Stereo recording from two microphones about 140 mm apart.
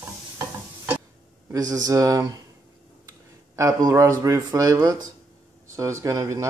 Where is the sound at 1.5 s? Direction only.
25° right (ahead or behind).